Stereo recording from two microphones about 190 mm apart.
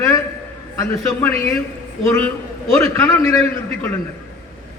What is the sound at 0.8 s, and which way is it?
A man's voice, 15° left (ahead or behind).